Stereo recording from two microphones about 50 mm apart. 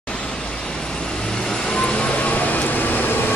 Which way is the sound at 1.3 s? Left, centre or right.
Centre.